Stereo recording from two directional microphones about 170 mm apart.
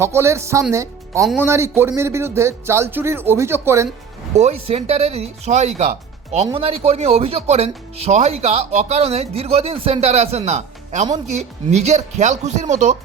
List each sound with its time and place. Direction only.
0.0 s speech: 15° right (ahead or behind)
4.4 s speech: 40° right (ahead or behind)